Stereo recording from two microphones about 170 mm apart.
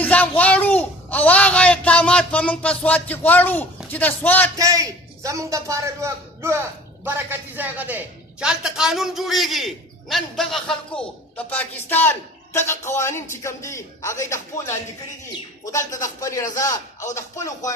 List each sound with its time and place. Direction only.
0.0 s speech: 10° left (ahead or behind)
4.5 s a man's voice: 20° right (ahead or behind); by 17.7 s 20° left (ahead or behind)